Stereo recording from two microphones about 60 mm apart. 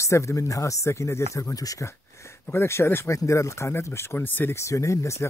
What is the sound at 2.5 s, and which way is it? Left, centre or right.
Speech, left.